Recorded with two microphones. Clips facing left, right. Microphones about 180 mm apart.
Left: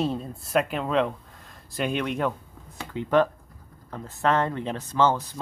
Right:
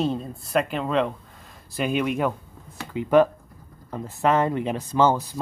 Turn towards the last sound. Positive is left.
turn(degrees=-10)  # may be behind; listen again after turning